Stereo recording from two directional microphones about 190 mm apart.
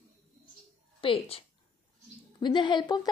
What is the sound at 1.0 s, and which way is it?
A woman's voice, 30° left (ahead or behind).